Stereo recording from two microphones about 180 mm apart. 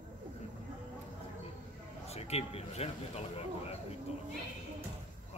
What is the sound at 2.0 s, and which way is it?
Speech, 35° left (ahead or behind).